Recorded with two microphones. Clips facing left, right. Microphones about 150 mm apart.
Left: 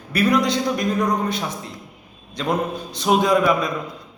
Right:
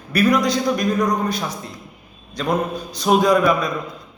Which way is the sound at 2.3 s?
25° left (ahead or behind).